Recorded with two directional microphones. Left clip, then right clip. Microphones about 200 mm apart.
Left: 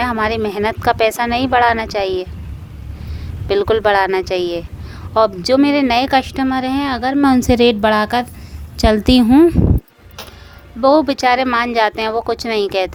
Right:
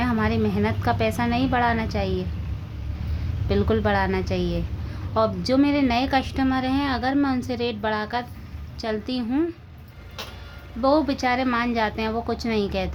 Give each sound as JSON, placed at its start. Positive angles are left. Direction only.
{"t": 0.0, "sound": "speech", "side_deg": 50}
{"t": 3.5, "sound": "speech", "side_deg": 45}
{"t": 10.8, "sound": "speech", "side_deg": 40}